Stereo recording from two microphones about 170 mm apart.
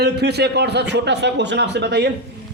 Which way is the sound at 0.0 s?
75° right (ahead or behind).